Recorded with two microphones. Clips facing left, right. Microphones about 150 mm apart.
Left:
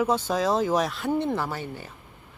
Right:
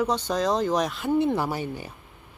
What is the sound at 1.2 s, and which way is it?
Speech, 10° right (ahead or behind).